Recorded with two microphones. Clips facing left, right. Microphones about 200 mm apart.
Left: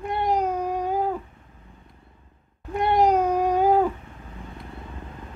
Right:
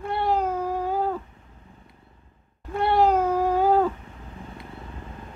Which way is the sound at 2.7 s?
15° left (ahead or behind).